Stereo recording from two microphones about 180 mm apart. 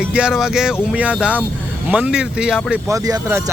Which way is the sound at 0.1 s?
5° right (ahead or behind).